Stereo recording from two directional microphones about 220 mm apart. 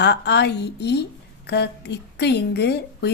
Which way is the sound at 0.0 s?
50° left (ahead or behind).